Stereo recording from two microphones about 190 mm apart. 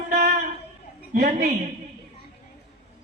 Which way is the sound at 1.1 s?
55° right (ahead or behind).